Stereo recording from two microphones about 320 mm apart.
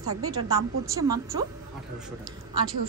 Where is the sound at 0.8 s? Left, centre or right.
Centre.